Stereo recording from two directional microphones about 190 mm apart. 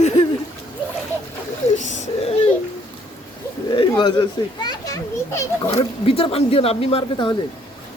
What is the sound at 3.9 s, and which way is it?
A child's voice, 25° left (ahead or behind).